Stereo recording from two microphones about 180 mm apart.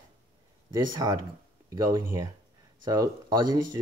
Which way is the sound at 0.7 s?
20° right (ahead or behind).